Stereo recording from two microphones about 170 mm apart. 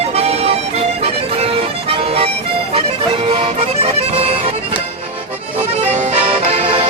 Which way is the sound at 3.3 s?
35° right (ahead or behind).